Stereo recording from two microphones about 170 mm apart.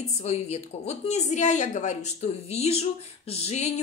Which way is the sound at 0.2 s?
40° left (ahead or behind).